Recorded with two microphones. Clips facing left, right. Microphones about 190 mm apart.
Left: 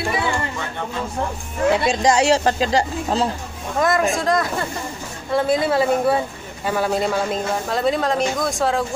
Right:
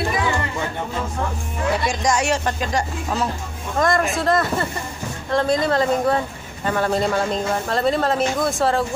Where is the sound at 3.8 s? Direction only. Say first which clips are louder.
Left 1 dB; centre (ahead or behind).